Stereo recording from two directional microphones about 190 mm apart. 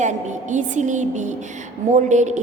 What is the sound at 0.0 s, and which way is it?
A woman's voice, 40° right (ahead or behind).